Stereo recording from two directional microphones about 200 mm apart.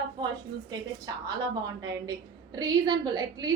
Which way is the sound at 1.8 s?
20° right (ahead or behind).